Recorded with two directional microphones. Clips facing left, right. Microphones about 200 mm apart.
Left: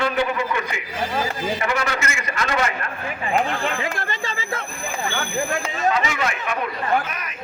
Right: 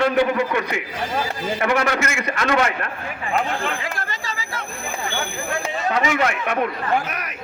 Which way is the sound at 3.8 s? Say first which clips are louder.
Left 3 dB; 25° left (ahead or behind).